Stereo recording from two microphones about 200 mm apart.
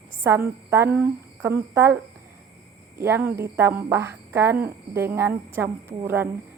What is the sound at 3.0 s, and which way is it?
Speech, 10° right (ahead or behind).